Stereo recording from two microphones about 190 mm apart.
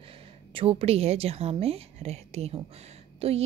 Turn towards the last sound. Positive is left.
turn(degrees=-30)  # may be behind; listen again after turning